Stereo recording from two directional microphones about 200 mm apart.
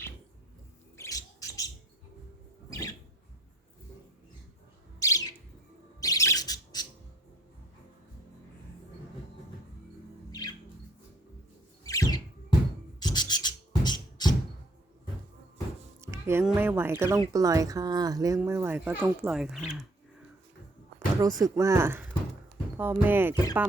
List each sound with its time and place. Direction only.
0.9 s bird: 15° left (ahead or behind)
2.6 s rodents: 15° left (ahead or behind)
4.9 s bird: 15° left (ahead or behind)
11.8 s a sound: 15° left (ahead or behind)
13.0 s beatboxing: 20° left (ahead or behind)
16.0 s music: 15° right (ahead or behind)
16.4 s speech: 5° right (ahead or behind)
21.2 s speech: 15° right (ahead or behind)
23.3 s speech: 20° left (ahead or behind)